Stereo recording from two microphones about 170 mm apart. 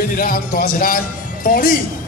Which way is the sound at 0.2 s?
55° left (ahead or behind).